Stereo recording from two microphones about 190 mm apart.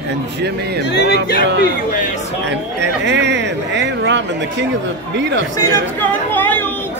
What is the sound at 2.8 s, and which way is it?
A man's voice, 65° right (ahead or behind).